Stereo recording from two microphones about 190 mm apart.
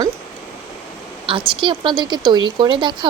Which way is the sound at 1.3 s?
25° right (ahead or behind).